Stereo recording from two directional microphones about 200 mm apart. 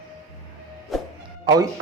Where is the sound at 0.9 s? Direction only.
Centre (ahead or behind).